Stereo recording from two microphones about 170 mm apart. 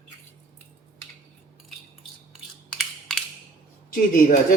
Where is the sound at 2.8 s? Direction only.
5° left (ahead or behind).